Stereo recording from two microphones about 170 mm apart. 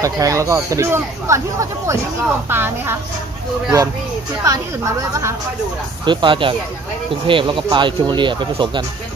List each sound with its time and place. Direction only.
0.0 s speech: 20° right (ahead or behind)
4.4 s speech: 20° right (ahead or behind)
6.0 s speech: 30° right (ahead or behind)